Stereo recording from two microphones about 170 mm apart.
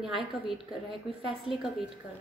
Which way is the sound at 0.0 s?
Centre (ahead or behind).